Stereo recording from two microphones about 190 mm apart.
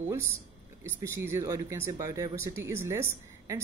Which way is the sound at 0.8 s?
15° right (ahead or behind).